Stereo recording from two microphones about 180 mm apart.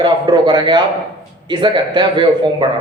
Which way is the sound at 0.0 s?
25° right (ahead or behind).